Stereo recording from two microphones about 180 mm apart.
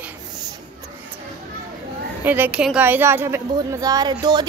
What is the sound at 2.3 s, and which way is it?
A woman's voice, 10° right (ahead or behind).